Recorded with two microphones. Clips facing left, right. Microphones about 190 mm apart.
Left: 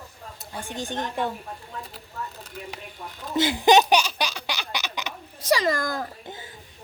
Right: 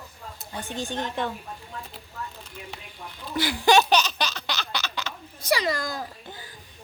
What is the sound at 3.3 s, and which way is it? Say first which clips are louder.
Baby laughter: left 2 dB; 20° left (ahead or behind).